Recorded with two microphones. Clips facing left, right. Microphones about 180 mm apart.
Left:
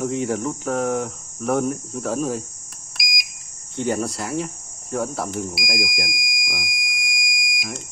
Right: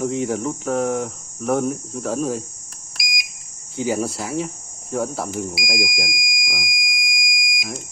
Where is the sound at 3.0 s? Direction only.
Centre (ahead or behind).